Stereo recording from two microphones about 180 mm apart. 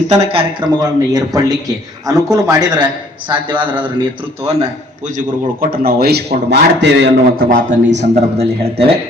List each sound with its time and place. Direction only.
0.1 s a man's voice: 35° right (ahead or behind); by 7.4 s 70° right (ahead or behind)
7.5 s speech: 45° right (ahead or behind)